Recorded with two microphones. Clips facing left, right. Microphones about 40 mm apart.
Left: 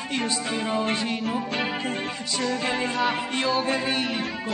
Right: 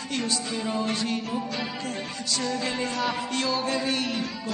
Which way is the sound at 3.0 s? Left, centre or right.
Left.